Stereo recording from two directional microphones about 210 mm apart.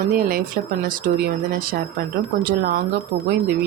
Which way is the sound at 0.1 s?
45° right (ahead or behind).